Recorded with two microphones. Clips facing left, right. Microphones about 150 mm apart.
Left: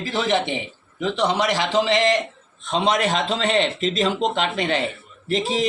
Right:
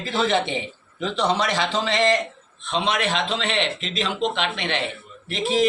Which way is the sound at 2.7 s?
40° left (ahead or behind).